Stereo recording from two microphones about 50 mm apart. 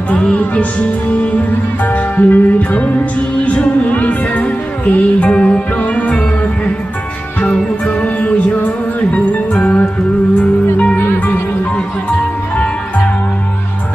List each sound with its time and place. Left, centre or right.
0.1 s music: left
5.8 s music: left
8.0 s music: left